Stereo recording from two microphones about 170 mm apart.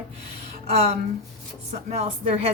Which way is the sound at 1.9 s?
40° right (ahead or behind).